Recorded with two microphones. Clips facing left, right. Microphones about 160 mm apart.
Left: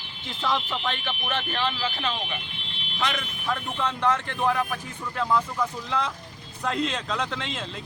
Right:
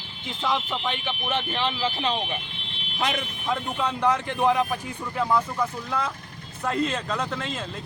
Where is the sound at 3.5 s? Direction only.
10° right (ahead or behind).